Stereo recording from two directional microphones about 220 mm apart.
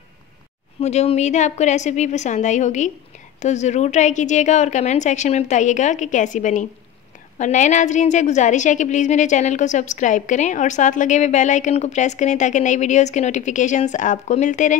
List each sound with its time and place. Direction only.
0.7 s a woman's voice: 30° left (ahead or behind)